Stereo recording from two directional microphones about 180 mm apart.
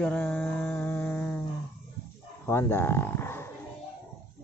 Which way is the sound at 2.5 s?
15° left (ahead or behind).